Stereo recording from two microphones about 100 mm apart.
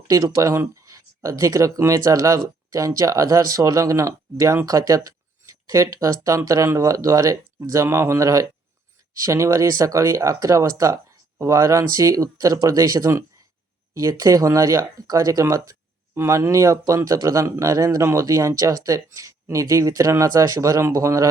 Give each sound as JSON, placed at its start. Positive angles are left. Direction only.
{"t": 0.3, "sound": "speech", "side_deg": -30}